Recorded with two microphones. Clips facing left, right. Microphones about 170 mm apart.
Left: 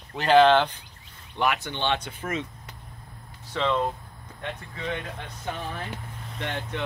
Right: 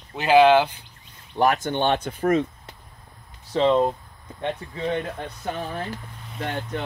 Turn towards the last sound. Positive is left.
turn(degrees=-40)  # may be behind; listen again after turning